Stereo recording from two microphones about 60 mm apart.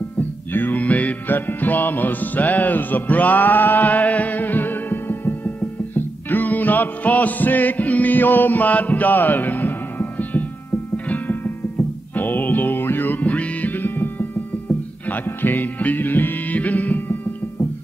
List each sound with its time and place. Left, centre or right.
0.5 s music: left
15.2 s music: left